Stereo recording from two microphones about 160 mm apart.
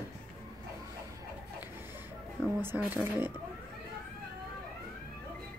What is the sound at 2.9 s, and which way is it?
Speech, 15° right (ahead or behind).